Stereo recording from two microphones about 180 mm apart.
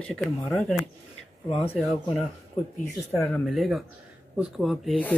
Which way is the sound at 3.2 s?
Centre (ahead or behind).